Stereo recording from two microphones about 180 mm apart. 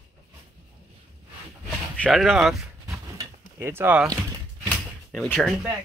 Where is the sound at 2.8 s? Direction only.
15° right (ahead or behind).